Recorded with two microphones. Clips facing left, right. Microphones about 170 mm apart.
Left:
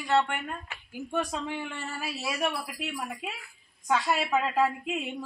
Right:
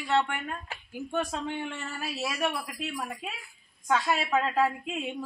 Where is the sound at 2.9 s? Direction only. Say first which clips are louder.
Even; 5° left (ahead or behind).